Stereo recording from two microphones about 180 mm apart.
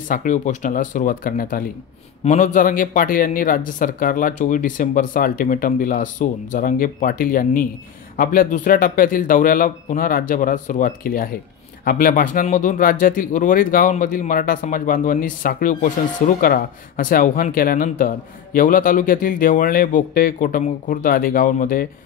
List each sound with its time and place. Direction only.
0.1 s speech: 45° left (ahead or behind)